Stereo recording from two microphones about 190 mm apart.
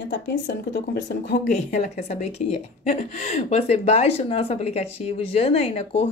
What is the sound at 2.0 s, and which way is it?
A woman's voice, 35° left (ahead or behind).